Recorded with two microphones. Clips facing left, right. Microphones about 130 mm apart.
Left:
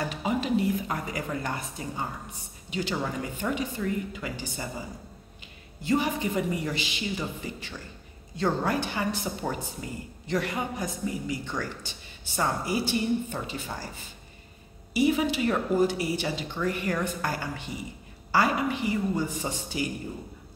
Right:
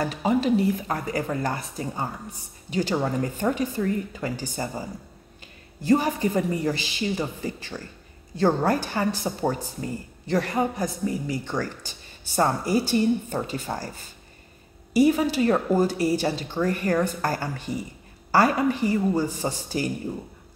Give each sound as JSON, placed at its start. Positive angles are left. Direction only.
{"t": 0.0, "sound": "a woman's voice", "side_deg": -40}